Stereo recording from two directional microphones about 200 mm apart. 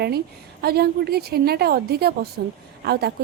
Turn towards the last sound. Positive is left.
turn(degrees=-50)  # may be behind; listen again after turning